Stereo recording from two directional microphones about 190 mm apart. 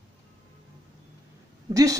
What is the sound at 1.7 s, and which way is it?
Speech, 20° right (ahead or behind).